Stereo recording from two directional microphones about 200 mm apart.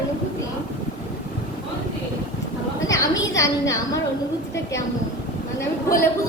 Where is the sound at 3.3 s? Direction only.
15° left (ahead or behind).